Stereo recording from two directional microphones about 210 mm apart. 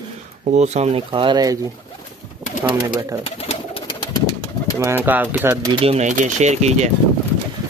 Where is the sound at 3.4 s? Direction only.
30° left (ahead or behind).